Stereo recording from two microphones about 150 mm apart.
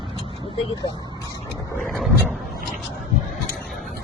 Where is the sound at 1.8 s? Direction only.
5° left (ahead or behind).